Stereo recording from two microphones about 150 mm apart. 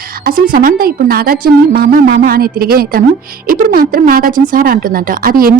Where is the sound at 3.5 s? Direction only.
75° right (ahead or behind).